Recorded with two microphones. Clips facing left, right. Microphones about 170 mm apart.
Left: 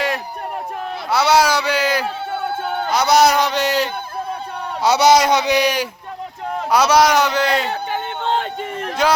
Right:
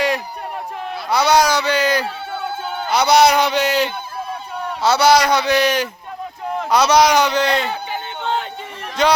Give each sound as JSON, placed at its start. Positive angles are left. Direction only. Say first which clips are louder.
{"t": 1.1, "sound": "speech", "louder": "even", "side_deg": 5}
{"t": 2.3, "sound": "music", "louder": "left 3 dB", "side_deg": 55}
{"t": 2.9, "sound": "a man's voice", "louder": "right 1 dB", "side_deg": 0}
{"t": 4.8, "sound": "a man's voice", "louder": "left 1 dB", "side_deg": 20}
{"t": 7.9, "sound": "a sound", "louder": "left 2 dB", "side_deg": 50}
{"t": 9.0, "sound": "a man's voice", "louder": "right 1 dB", "side_deg": 5}